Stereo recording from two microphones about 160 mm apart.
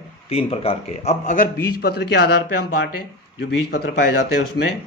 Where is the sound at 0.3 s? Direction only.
40° left (ahead or behind).